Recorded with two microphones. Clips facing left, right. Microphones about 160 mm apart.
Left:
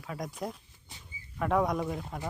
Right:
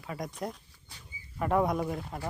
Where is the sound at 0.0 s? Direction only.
Centre (ahead or behind).